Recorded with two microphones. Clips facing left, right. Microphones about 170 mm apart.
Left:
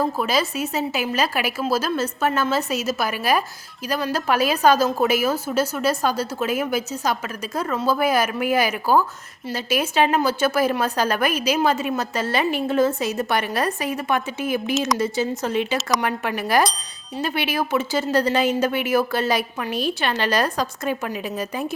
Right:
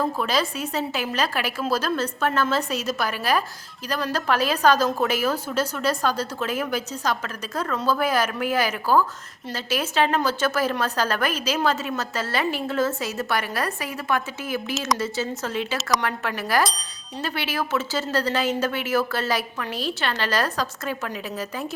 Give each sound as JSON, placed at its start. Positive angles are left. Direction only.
{"t": 0.0, "sound": "a woman's voice", "side_deg": 10}